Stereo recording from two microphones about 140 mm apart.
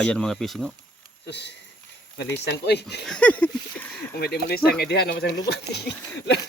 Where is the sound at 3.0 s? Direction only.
5° left (ahead or behind).